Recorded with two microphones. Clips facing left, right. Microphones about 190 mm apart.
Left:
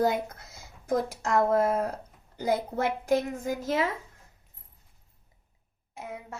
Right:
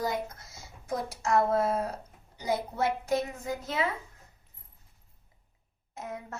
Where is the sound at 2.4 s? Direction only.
55° left (ahead or behind).